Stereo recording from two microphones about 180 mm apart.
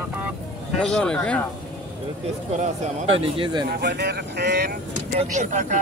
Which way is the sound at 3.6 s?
65° right (ahead or behind).